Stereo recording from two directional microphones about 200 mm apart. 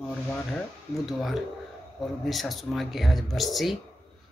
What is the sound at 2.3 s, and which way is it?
Speech, centre (ahead or behind).